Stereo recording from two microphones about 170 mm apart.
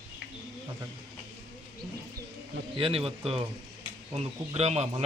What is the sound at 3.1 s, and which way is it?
Speech, 35° right (ahead or behind).